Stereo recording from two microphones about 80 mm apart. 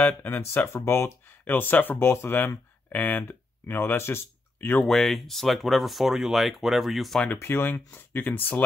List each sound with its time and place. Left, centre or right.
0.0 s speech: left
4.8 s speech: centre
7.3 s speech: left